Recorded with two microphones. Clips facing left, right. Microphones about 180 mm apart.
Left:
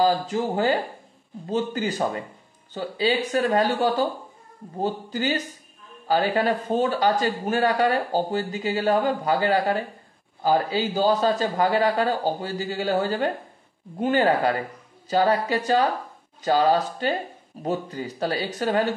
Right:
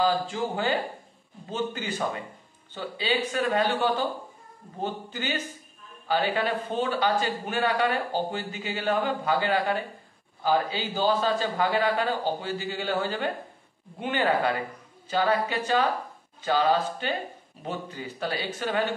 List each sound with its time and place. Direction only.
0.0 s speech: 40° left (ahead or behind)